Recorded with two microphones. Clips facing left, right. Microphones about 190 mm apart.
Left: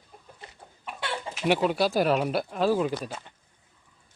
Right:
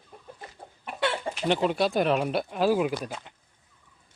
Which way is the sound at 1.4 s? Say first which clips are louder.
Left 1 dB; 5° left (ahead or behind).